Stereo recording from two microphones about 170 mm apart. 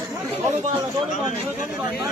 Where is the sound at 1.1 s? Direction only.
45° left (ahead or behind).